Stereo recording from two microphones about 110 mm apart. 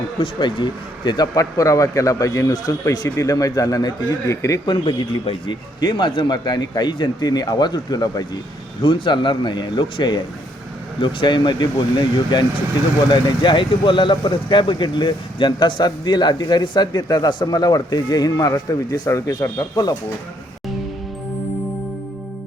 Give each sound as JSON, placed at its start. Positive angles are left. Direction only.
{"t": 0.2, "sound": "speech", "side_deg": 45}
{"t": 4.7, "sound": "speech", "side_deg": 45}